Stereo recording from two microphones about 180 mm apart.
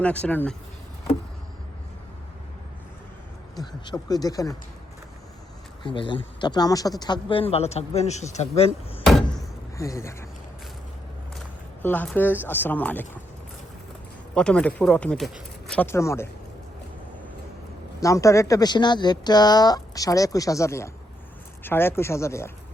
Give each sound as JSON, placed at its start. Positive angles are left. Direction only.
{"t": 0.0, "sound": "speech", "side_deg": 10}
{"t": 3.8, "sound": "speech", "side_deg": 20}
{"t": 5.8, "sound": "speech", "side_deg": 25}
{"t": 9.7, "sound": "speech", "side_deg": 15}
{"t": 11.8, "sound": "speech", "side_deg": 10}
{"t": 14.3, "sound": "speech", "side_deg": 5}
{"t": 18.0, "sound": "speech", "side_deg": 15}